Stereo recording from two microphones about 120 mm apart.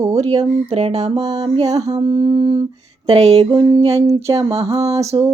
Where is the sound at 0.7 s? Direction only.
60° right (ahead or behind).